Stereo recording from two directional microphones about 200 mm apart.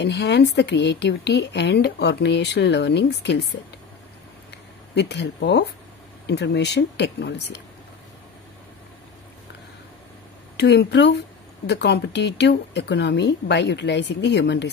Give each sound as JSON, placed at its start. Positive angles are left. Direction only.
{"t": 0.0, "sound": "speech", "side_deg": 60}
{"t": 4.9, "sound": "speech", "side_deg": 60}
{"t": 10.6, "sound": "speech", "side_deg": 55}